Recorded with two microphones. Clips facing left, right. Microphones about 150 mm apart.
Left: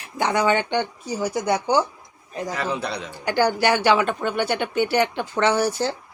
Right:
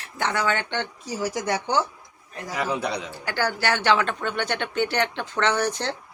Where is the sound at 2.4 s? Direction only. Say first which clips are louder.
Right 1 dB; 10° right (ahead or behind).